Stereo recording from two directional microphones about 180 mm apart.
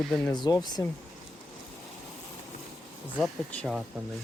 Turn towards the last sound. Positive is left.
turn(degrees=0)  # may be behind; listen again after turning